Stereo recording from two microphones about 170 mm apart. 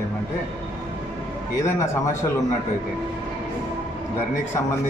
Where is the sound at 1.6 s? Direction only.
15° left (ahead or behind).